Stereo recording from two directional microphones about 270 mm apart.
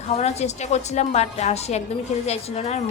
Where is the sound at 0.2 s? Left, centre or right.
Left.